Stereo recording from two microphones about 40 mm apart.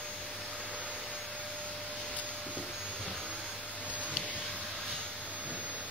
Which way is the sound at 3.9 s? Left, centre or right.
Right.